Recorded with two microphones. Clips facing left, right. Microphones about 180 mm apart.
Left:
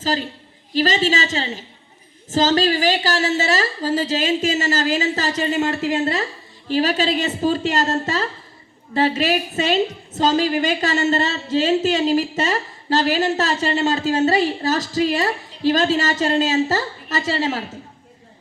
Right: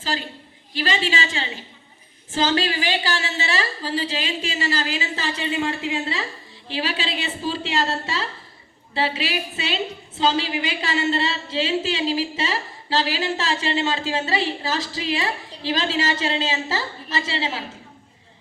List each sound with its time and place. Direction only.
0.0 s a woman's voice: 40° left (ahead or behind)
6.7 s a woman's voice: 45° left (ahead or behind)